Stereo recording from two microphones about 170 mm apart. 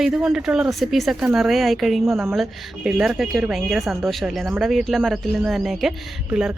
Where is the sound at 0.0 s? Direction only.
5° right (ahead or behind).